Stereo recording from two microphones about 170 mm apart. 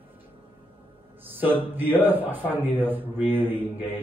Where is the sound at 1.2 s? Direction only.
10° right (ahead or behind).